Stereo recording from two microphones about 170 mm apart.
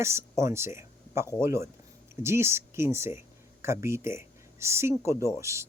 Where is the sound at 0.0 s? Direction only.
15° right (ahead or behind).